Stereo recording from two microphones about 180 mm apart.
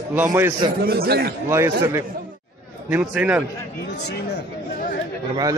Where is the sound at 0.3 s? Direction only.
15° right (ahead or behind).